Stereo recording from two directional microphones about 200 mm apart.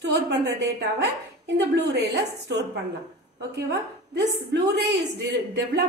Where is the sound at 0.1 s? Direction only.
55° right (ahead or behind).